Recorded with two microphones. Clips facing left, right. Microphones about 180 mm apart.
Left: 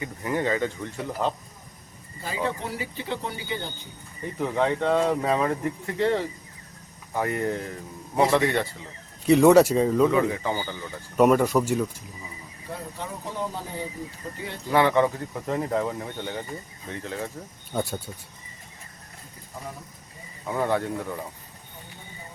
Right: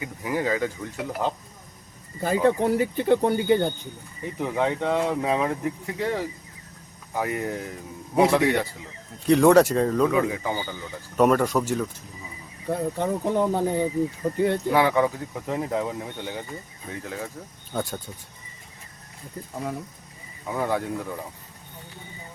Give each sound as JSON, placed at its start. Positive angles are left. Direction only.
{"t": 0.0, "sound": "speech", "side_deg": -5}
{"t": 2.2, "sound": "speech", "side_deg": -55}
{"t": 4.4, "sound": "speech", "side_deg": -10}
{"t": 9.2, "sound": "speech", "side_deg": 5}
{"t": 11.2, "sound": "speech", "side_deg": 5}
{"t": 12.6, "sound": "speech", "side_deg": -55}
{"t": 14.7, "sound": "speech", "side_deg": -5}
{"t": 17.7, "sound": "speech", "side_deg": 10}
{"t": 20.5, "sound": "speech", "side_deg": -5}